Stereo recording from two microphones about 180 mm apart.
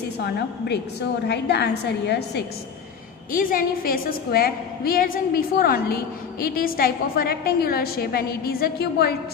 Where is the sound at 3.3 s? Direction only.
50° left (ahead or behind).